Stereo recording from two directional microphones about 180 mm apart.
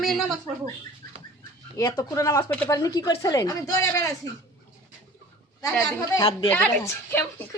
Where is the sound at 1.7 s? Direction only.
15° left (ahead or behind).